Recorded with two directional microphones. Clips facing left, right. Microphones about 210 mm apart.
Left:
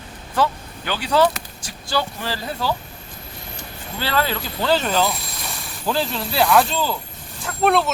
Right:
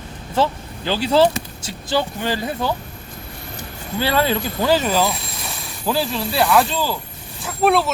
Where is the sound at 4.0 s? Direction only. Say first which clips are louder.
Right 4 dB; 15° right (ahead or behind).